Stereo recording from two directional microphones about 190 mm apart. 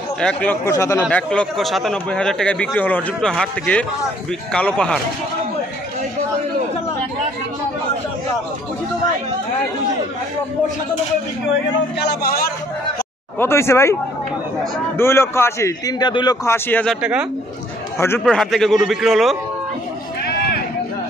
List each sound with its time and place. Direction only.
0.2 s a man's voice: 5° left (ahead or behind)
1.0 s speech: 5° left (ahead or behind)
11.4 s a man's voice: 65° left (ahead or behind)
13.4 s a man's voice: 15° left (ahead or behind)
15.0 s a man's voice: 15° left (ahead or behind)
16.4 s a man's voice: 10° left (ahead or behind)
17.0 s speech: 5° right (ahead or behind)
17.9 s a man's voice: 10° left (ahead or behind)
18.2 s speech: centre (ahead or behind)